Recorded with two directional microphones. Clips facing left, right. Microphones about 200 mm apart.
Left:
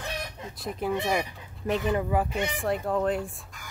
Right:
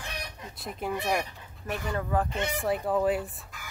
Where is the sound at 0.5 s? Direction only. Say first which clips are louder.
Left 4 dB; centre (ahead or behind).